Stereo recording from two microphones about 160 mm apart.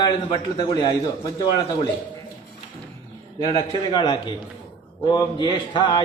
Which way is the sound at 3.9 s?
30° left (ahead or behind).